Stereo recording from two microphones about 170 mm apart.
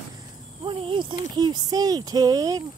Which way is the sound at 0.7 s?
30° right (ahead or behind).